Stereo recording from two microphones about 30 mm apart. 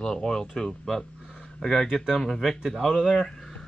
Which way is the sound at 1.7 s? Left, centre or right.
Centre.